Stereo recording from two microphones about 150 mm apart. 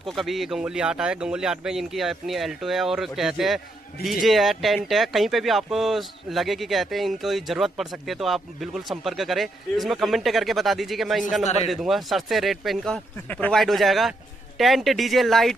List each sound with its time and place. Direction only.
0.0 s speech: centre (ahead or behind)